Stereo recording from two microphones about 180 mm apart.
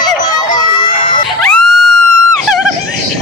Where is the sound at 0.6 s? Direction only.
25° left (ahead or behind).